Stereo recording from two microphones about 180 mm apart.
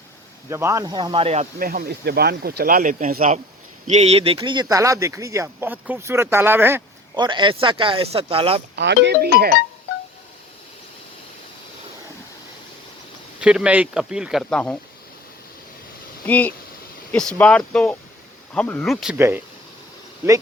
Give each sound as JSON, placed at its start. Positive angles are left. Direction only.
{"t": 0.5, "sound": "speech", "side_deg": -15}
{"t": 1.5, "sound": "speech", "side_deg": -55}
{"t": 3.8, "sound": "speech", "side_deg": -35}
{"t": 7.2, "sound": "speech", "side_deg": -25}
{"t": 8.7, "sound": "speech", "side_deg": -75}
{"t": 13.4, "sound": "speech", "side_deg": -5}
{"t": 16.2, "sound": "speech", "side_deg": 10}
{"t": 19.1, "sound": "speech", "side_deg": -10}